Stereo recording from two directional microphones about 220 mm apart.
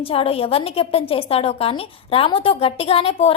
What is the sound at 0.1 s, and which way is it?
A woman's voice, 25° left (ahead or behind).